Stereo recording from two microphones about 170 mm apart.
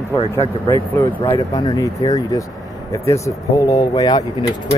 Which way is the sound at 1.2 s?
25° left (ahead or behind).